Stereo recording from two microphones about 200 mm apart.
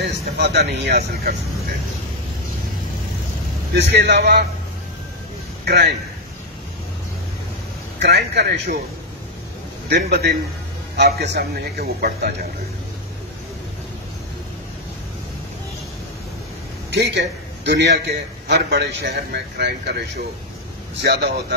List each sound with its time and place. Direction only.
0.0 s a man's voice: 55° right (ahead or behind)
3.7 s a man's voice: 55° right (ahead or behind)
5.7 s speech: 55° right (ahead or behind)
8.0 s speech: 55° right (ahead or behind)
9.8 s speech: 55° right (ahead or behind)
16.9 s a man's voice: 60° right (ahead or behind)